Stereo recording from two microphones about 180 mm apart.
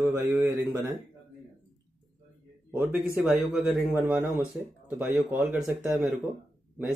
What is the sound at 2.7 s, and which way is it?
A man's voice, 10° right (ahead or behind).